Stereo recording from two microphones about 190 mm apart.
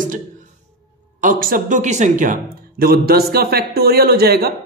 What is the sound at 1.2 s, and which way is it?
A man's voice, 45° right (ahead or behind).